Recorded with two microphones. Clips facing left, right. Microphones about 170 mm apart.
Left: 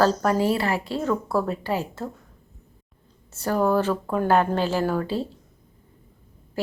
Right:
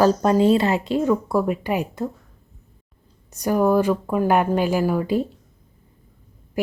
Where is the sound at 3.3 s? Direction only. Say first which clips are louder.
Right 3 dB; 15° right (ahead or behind).